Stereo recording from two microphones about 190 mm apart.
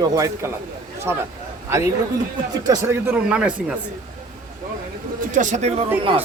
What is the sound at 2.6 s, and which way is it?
Speech, 15° right (ahead or behind).